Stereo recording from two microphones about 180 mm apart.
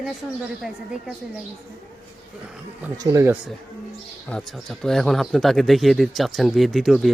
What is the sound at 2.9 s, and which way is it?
Speech, 20° right (ahead or behind).